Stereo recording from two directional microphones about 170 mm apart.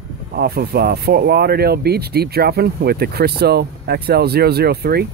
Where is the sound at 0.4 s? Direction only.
65° right (ahead or behind).